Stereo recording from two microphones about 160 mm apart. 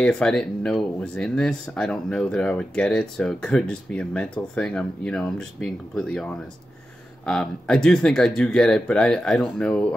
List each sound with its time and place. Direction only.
0.0 s speech: 5° left (ahead or behind)
7.2 s speech: 5° left (ahead or behind)